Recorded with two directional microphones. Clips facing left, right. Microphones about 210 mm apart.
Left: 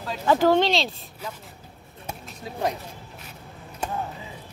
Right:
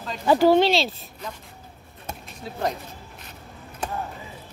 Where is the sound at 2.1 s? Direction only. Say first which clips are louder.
Even; 10° left (ahead or behind).